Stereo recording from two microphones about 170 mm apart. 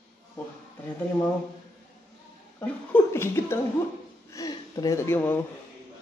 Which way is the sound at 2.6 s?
10° left (ahead or behind).